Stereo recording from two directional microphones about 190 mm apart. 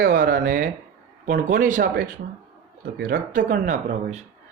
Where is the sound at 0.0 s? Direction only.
50° right (ahead or behind).